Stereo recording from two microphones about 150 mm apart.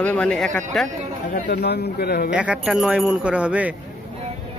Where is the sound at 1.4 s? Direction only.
90° left.